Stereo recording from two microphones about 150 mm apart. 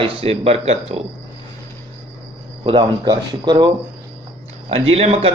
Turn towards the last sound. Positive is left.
turn(degrees=-40)  # may be behind; listen again after turning